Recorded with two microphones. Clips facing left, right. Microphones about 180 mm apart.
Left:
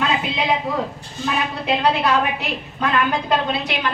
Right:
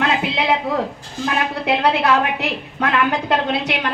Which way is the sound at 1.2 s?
70° right (ahead or behind).